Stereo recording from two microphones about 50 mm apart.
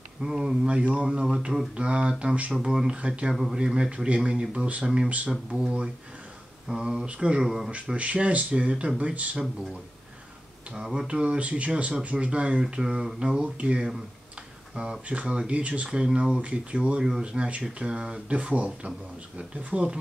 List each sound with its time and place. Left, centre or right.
0.2 s speech: centre
2.5 s speech: centre
7.4 s speech: centre
7.7 s speech: right
10.7 s speech: centre
18.3 s speech: right